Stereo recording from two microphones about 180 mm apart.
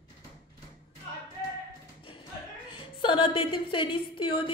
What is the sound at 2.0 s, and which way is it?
Music, 30° left (ahead or behind).